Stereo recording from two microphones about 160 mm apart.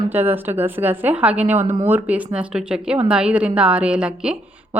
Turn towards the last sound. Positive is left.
turn(degrees=-5)  # may be behind; listen again after turning